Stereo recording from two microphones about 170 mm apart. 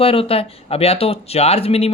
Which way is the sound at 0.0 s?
35° left (ahead or behind).